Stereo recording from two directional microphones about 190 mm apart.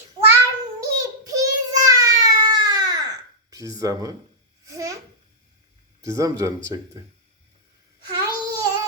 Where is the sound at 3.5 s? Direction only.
15° right (ahead or behind).